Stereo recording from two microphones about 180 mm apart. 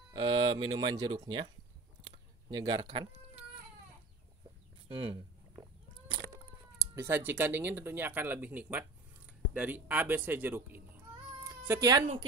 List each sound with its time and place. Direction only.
0.1 s speech: 25° right (ahead or behind)
2.0 s a sound: 25° right (ahead or behind)
4.8 s speech: 30° right (ahead or behind)
6.8 s speech: 15° right (ahead or behind)
11.4 s cat: 15° right (ahead or behind)